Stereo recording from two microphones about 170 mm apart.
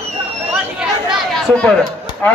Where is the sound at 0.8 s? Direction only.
5° right (ahead or behind).